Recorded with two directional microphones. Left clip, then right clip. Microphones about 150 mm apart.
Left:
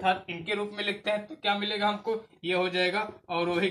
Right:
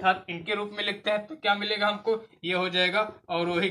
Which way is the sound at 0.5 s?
20° right (ahead or behind).